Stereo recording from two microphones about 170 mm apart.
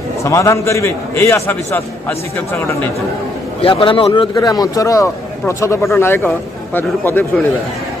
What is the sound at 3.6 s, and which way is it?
A man's voice, 30° left (ahead or behind).